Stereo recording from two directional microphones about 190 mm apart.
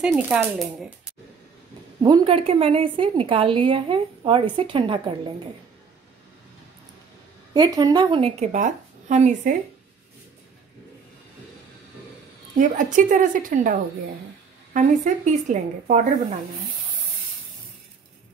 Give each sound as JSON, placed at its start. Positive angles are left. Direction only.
{"t": 0.0, "sound": "speech", "side_deg": -5}
{"t": 2.0, "sound": "a woman's voice", "side_deg": -25}
{"t": 7.5, "sound": "a woman's voice", "side_deg": -20}
{"t": 12.5, "sound": "a woman's voice", "side_deg": -45}